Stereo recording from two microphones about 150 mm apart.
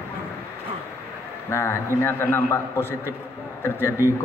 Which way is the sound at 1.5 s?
15° left (ahead or behind).